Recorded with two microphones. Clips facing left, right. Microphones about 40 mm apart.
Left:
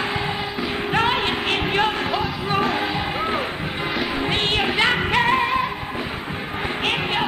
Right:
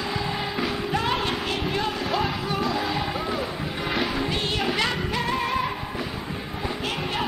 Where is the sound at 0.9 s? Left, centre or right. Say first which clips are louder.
Left 6 dB; left.